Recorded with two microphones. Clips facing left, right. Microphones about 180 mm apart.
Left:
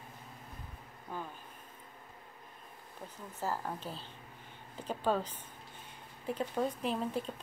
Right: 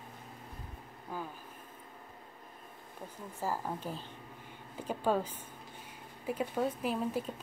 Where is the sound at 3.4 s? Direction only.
10° right (ahead or behind).